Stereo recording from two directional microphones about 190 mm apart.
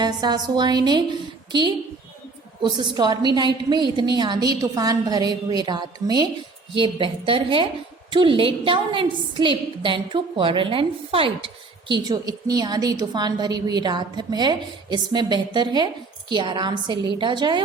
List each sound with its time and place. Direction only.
0.0 s a woman's voice: 20° right (ahead or behind)